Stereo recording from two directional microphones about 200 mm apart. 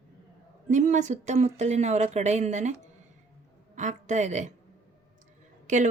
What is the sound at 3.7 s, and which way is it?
Speech, 35° right (ahead or behind).